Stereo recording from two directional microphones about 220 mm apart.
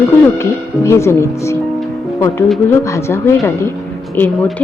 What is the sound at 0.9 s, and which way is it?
Speech, 10° left (ahead or behind).